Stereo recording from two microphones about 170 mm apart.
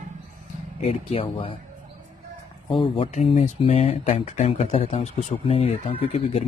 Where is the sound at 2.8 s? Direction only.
35° left (ahead or behind).